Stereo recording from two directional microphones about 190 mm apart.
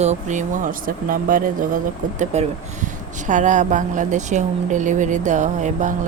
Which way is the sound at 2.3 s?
35° right (ahead or behind).